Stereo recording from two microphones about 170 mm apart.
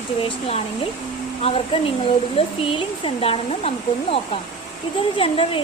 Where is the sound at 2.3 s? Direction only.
35° left (ahead or behind).